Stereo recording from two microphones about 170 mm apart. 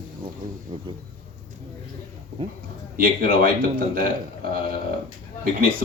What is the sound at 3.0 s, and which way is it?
Speech, 60° right (ahead or behind).